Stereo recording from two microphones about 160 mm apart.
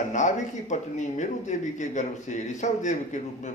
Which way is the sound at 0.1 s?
50° left (ahead or behind).